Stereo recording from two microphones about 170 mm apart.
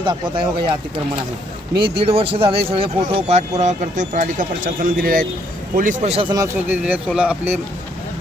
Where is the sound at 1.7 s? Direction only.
30° right (ahead or behind); by 6.1 s 50° right (ahead or behind).